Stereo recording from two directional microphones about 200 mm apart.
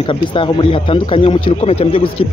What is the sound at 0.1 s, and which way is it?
Speech, 25° left (ahead or behind).